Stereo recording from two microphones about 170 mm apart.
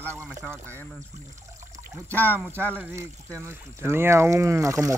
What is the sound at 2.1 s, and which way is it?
Speech, 10° left (ahead or behind).